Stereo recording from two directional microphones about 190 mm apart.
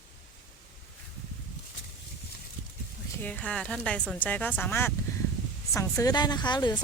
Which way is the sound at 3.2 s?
5° left (ahead or behind).